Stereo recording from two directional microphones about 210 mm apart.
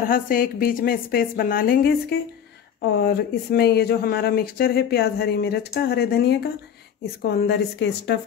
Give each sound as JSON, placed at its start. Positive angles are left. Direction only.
{"t": 0.1, "sound": "speech", "side_deg": 40}